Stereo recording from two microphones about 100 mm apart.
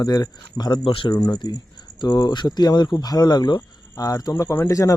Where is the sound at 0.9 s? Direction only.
60° left (ahead or behind).